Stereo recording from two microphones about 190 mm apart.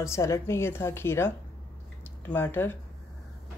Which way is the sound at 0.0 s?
15° left (ahead or behind).